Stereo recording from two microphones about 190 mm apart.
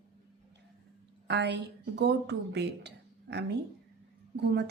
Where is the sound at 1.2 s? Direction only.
65° right (ahead or behind).